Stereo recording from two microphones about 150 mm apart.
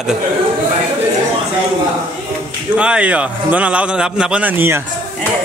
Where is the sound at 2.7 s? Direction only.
10° right (ahead or behind).